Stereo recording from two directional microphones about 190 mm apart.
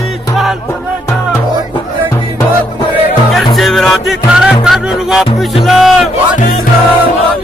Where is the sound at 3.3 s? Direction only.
Centre (ahead or behind).